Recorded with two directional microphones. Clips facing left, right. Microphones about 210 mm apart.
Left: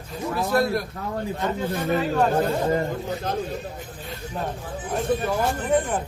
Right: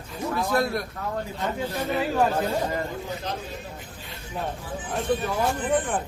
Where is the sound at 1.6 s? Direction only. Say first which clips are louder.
Left 2 dB; 50° left (ahead or behind).